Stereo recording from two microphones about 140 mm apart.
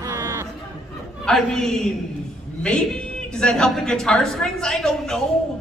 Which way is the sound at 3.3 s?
5° left (ahead or behind).